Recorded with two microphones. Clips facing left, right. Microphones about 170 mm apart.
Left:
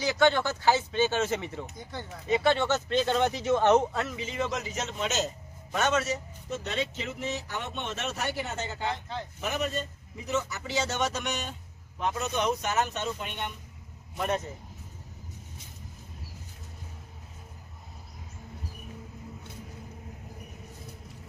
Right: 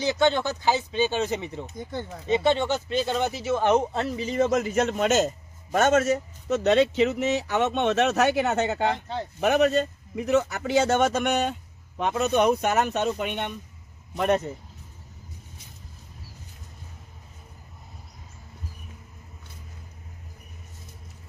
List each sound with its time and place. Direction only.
0.0 s speech: 20° right (ahead or behind)
3.9 s speech: 35° right (ahead or behind); by 6.1 s 50° right (ahead or behind)
6.5 s a man's voice: 80° right; by 11.5 s 60° right (ahead or behind)
11.9 s a man's voice: 70° right (ahead or behind)